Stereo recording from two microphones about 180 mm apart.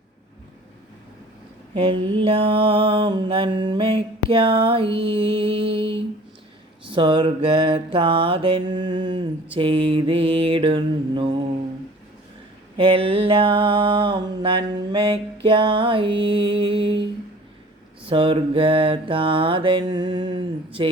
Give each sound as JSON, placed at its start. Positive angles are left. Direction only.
{"t": 1.7, "sound": "mantra", "side_deg": -30}
{"t": 12.7, "sound": "mantra", "side_deg": -30}
{"t": 18.0, "sound": "mantra", "side_deg": -30}